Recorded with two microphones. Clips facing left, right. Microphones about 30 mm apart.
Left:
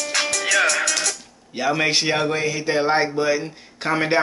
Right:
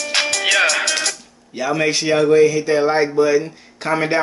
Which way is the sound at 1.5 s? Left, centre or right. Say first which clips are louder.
Right 1 dB; centre.